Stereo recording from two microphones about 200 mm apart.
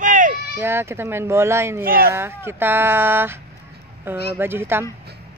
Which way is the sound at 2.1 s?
10° right (ahead or behind).